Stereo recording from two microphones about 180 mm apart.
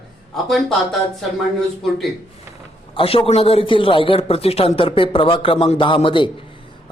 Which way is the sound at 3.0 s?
30° left (ahead or behind).